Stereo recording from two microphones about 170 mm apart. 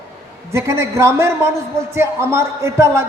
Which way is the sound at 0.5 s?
15° right (ahead or behind).